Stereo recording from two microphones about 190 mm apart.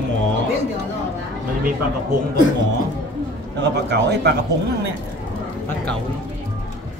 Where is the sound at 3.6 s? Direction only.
65° right (ahead or behind).